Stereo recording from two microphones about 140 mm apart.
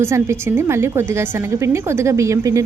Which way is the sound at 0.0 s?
20° right (ahead or behind).